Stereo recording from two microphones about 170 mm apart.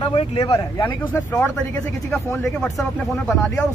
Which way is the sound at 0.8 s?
10° left (ahead or behind).